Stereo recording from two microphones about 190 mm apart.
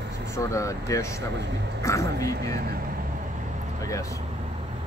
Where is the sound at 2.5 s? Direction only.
55° right (ahead or behind).